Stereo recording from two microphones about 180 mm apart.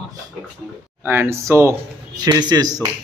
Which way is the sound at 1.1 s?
15° right (ahead or behind).